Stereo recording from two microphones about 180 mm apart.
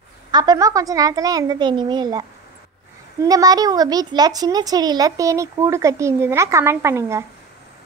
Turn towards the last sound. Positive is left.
turn(degrees=-15)  # may be behind; listen again after turning